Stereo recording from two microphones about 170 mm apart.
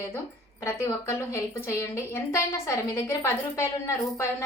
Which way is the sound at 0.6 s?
15° left (ahead or behind).